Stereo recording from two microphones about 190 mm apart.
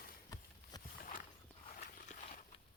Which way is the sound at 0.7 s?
20° left (ahead or behind).